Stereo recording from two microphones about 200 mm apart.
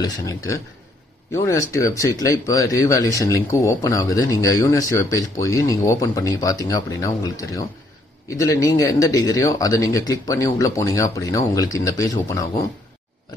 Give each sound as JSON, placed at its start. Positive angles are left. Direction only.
{"t": 0.0, "sound": "speech", "side_deg": 15}